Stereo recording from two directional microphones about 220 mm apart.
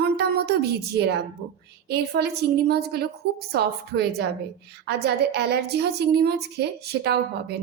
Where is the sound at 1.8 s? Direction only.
45° right (ahead or behind).